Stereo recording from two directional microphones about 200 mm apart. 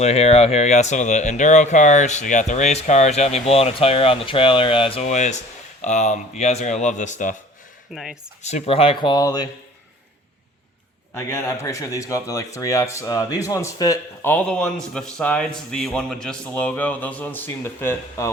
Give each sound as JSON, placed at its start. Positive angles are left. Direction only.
{"t": 0.0, "sound": "speech", "side_deg": 30}
{"t": 7.9, "sound": "speech", "side_deg": 0}
{"t": 8.4, "sound": "speech", "side_deg": 35}
{"t": 11.1, "sound": "a man's voice", "side_deg": 10}